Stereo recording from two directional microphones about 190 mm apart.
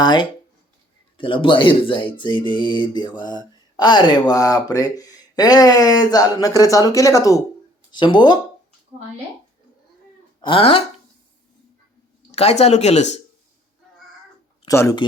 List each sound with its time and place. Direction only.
0.0 s speech: 25° left (ahead or behind)
10.4 s speech: 30° left (ahead or behind)
12.3 s speech: 35° left (ahead or behind)
14.7 s speech: 15° left (ahead or behind)